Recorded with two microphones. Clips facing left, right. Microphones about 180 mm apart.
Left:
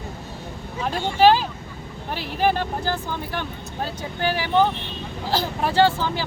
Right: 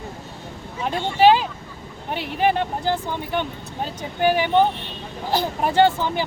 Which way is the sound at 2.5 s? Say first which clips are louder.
Right 2 dB; 20° right (ahead or behind).